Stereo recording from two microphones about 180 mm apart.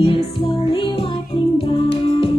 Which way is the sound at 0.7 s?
30° left (ahead or behind).